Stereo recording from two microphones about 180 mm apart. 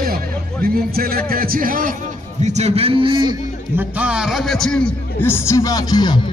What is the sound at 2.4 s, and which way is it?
A man's voice, 40° right (ahead or behind).